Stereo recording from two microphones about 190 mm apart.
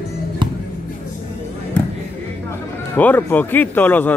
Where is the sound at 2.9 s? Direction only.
10° left (ahead or behind).